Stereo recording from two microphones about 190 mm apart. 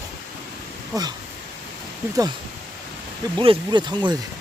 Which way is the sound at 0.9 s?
20° right (ahead or behind).